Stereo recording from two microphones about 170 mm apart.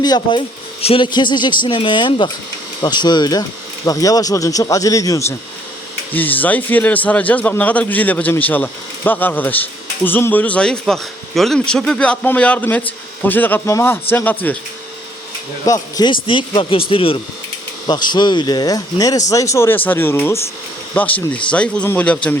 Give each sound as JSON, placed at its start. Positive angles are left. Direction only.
{"t": 0.0, "sound": "a man's voice", "side_deg": 25}
{"t": 15.6, "sound": "a man's voice", "side_deg": 20}